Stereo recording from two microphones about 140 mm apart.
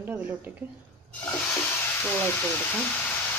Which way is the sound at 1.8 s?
15° left (ahead or behind).